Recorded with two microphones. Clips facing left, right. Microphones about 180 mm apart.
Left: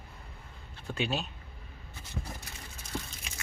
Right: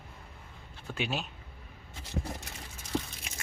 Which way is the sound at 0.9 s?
10° right (ahead or behind).